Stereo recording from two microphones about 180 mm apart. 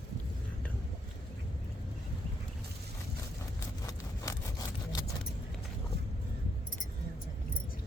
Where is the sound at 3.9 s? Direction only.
20° left (ahead or behind).